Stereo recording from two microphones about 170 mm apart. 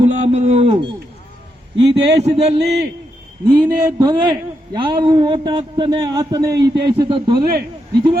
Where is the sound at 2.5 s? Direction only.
80° right.